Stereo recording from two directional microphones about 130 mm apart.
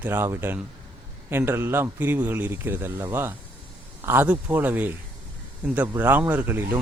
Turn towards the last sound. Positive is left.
turn(degrees=-15)  # may be behind; listen again after turning